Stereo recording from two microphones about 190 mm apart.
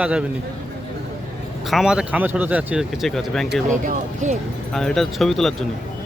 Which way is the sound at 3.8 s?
40° right (ahead or behind).